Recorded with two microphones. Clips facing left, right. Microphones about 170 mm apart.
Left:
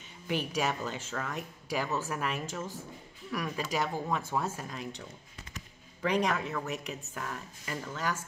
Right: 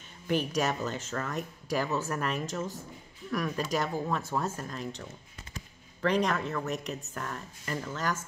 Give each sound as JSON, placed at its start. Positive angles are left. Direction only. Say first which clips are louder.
{"t": 0.3, "sound": "speech", "louder": "right 4 dB", "side_deg": -45}
{"t": 0.6, "sound": "speech", "louder": "right 2 dB", "side_deg": 10}
{"t": 6.0, "sound": "speech", "louder": "right 2 dB", "side_deg": 10}